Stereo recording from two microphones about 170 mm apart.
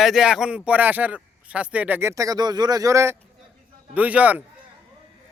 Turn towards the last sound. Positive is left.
turn(degrees=-10)  # may be behind; listen again after turning